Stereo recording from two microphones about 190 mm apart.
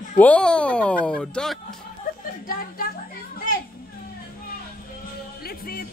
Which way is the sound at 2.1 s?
50° left (ahead or behind).